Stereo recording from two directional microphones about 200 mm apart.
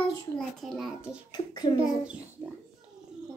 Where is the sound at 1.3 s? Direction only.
20° left (ahead or behind).